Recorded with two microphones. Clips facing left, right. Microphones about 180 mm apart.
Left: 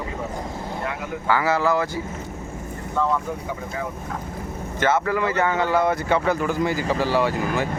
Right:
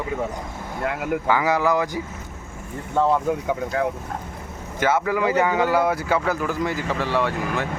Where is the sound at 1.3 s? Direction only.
15° right (ahead or behind).